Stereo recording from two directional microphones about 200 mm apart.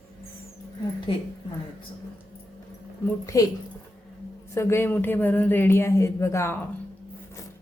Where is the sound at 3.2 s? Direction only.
15° left (ahead or behind).